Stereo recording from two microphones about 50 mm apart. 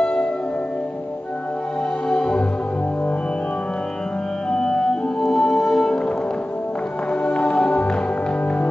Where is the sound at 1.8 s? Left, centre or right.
Centre.